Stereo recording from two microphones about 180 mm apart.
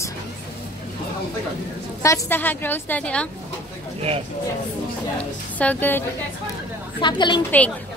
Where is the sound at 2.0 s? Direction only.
10° left (ahead or behind).